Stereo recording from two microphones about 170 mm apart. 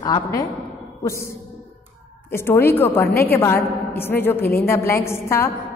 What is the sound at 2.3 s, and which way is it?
A woman's voice, 15° left (ahead or behind).